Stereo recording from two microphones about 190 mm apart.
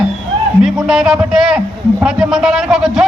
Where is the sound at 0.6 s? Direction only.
Centre (ahead or behind).